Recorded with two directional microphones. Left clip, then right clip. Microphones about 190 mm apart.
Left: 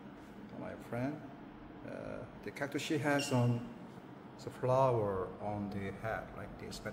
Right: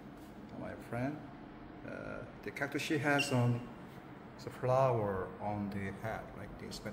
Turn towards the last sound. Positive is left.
turn(degrees=5)  # may be behind; listen again after turning